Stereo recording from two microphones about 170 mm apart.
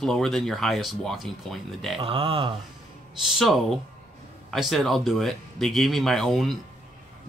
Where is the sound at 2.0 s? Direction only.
30° right (ahead or behind).